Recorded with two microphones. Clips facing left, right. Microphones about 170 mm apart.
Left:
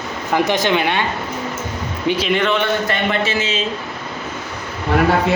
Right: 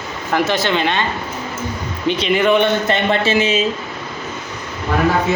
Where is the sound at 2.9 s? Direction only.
30° right (ahead or behind).